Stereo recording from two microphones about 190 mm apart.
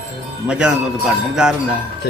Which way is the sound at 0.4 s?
5° right (ahead or behind).